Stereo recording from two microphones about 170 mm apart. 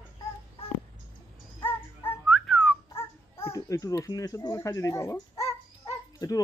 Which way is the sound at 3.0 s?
15° left (ahead or behind).